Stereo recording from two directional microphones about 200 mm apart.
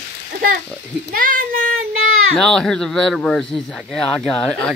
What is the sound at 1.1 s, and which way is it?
Speech, 45° right (ahead or behind).